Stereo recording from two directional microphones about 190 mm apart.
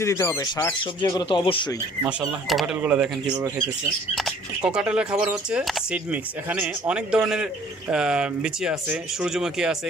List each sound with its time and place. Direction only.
0.0 s speech: 15° left (ahead or behind)
2.5 s speech: centre (ahead or behind)
4.1 s speech: centre (ahead or behind)